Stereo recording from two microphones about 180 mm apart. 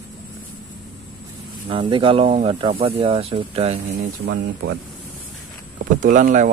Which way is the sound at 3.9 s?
60° right (ahead or behind).